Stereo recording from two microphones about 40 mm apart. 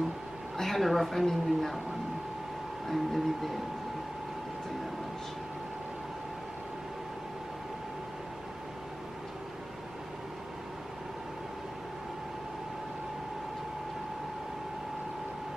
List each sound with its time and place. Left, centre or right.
0.6 s a woman's voice: centre
2.9 s speech: centre